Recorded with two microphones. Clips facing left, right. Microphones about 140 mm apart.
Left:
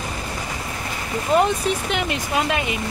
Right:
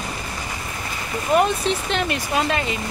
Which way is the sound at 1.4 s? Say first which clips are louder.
Even; 15° left (ahead or behind).